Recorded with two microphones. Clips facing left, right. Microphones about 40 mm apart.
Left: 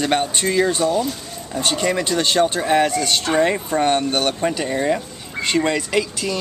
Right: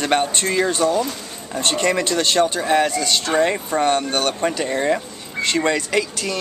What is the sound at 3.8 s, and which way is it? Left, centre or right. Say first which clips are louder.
Speech: even; centre.